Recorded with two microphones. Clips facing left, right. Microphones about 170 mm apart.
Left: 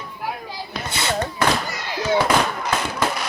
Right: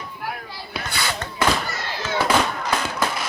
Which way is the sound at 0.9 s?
25° left (ahead or behind).